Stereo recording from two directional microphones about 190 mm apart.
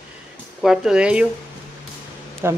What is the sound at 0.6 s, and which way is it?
Speech, centre (ahead or behind).